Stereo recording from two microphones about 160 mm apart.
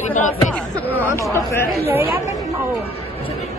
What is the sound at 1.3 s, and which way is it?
Speech, 15° left (ahead or behind).